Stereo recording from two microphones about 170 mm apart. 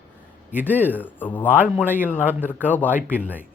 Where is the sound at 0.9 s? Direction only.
10° left (ahead or behind).